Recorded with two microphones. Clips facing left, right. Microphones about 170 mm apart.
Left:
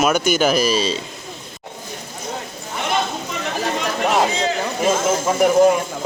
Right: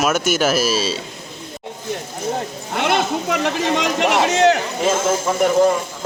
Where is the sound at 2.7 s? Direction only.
75° right (ahead or behind).